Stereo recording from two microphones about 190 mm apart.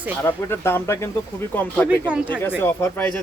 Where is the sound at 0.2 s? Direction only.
10° left (ahead or behind).